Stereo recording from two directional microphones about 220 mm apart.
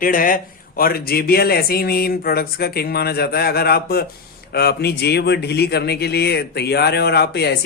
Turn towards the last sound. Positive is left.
turn(degrees=50)  # may be behind; listen again after turning